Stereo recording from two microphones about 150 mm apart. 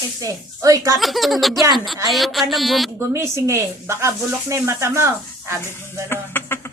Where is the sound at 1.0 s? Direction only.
Centre (ahead or behind).